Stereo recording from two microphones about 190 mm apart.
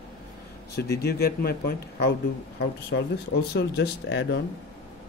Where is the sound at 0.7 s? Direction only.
60° left (ahead or behind).